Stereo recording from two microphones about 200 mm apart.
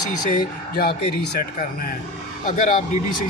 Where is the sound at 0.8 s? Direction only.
50° left (ahead or behind).